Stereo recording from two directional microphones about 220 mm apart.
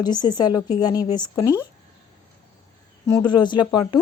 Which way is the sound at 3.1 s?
15° left (ahead or behind).